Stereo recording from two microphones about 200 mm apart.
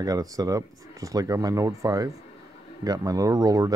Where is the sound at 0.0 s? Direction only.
20° right (ahead or behind).